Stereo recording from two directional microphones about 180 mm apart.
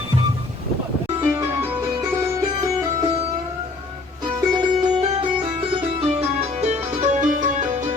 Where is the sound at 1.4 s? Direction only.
15° right (ahead or behind).